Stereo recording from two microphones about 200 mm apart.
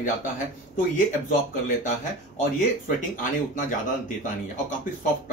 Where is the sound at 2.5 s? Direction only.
40° left (ahead or behind).